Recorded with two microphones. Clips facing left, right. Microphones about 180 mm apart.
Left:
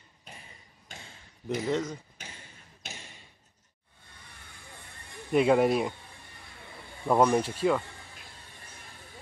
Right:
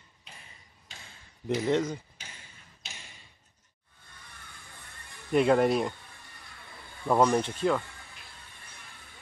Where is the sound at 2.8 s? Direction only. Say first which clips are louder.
Left 5 dB; 55° left (ahead or behind).